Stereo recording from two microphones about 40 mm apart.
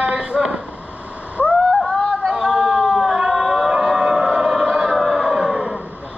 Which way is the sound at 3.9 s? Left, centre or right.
Centre.